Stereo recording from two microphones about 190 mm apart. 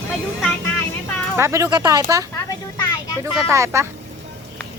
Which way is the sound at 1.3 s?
15° right (ahead or behind).